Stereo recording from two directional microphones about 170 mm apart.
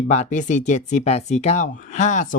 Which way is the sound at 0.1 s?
45° left (ahead or behind).